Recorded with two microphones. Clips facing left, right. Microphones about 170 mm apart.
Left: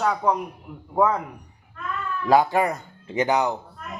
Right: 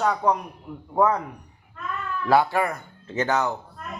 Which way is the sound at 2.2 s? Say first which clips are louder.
Left 2 dB; 15° left (ahead or behind).